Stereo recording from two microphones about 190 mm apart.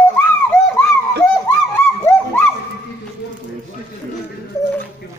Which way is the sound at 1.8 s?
10° left (ahead or behind).